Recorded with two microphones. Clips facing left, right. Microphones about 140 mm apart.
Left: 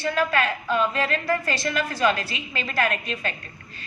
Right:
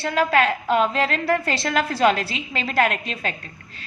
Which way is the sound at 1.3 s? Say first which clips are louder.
Right 3 dB; 30° right (ahead or behind).